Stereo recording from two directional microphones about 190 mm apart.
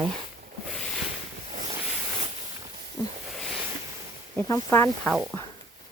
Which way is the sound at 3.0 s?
20° left (ahead or behind).